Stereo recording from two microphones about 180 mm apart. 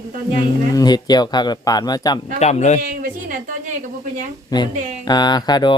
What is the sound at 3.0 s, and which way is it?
Speech, 45° right (ahead or behind).